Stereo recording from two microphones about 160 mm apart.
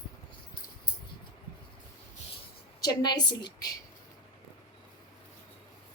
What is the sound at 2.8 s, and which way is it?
Speech, 25° left (ahead or behind).